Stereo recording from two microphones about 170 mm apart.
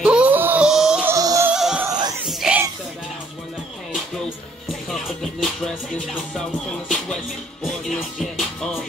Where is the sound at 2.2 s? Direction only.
5° right (ahead or behind).